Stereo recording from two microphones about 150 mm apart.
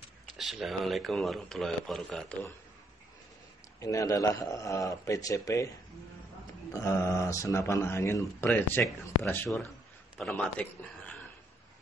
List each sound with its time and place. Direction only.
0.4 s speech: centre (ahead or behind)
3.8 s a man's voice: 20° left (ahead or behind)
6.7 s a man's voice: 20° left (ahead or behind)
10.1 s a man's voice: 10° left (ahead or behind)